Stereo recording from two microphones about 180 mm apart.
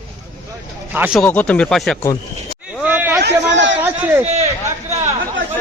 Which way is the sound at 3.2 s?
85° right.